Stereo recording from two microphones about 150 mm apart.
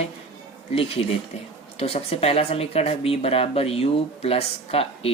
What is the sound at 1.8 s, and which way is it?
Speech, 40° left (ahead or behind).